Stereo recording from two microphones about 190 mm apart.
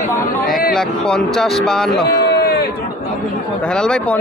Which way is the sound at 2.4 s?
55° left (ahead or behind).